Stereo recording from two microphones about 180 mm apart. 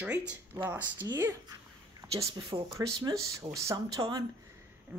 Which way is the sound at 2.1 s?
25° right (ahead or behind).